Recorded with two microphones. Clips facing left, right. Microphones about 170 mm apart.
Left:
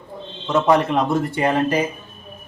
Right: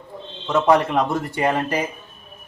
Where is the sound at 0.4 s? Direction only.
5° left (ahead or behind).